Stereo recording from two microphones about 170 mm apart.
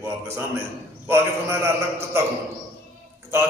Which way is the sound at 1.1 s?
15° right (ahead or behind).